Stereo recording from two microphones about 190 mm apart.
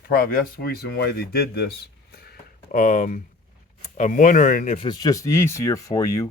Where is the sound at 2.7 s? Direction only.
45° left (ahead or behind).